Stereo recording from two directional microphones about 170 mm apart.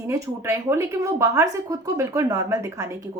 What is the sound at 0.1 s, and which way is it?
A woman's voice, 20° right (ahead or behind).